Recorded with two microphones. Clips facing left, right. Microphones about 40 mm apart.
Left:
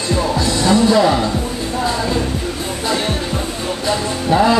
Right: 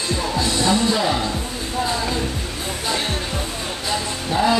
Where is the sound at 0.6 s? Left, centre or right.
Left.